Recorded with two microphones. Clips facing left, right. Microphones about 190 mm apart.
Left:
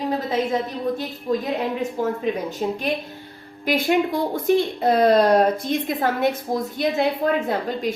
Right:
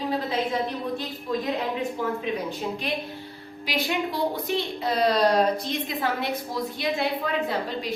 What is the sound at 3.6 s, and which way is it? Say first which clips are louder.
A woman's voice: left 7 dB; 50° left (ahead or behind).